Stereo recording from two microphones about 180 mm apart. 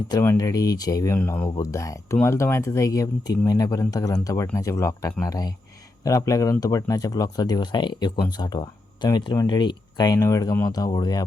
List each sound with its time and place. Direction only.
0.1 s speech: 15° left (ahead or behind)